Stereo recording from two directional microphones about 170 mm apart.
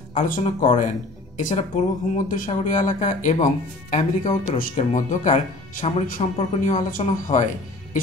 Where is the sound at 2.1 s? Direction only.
50° left (ahead or behind).